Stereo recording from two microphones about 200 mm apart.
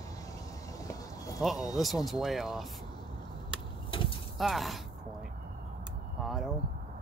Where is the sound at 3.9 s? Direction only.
25° left (ahead or behind).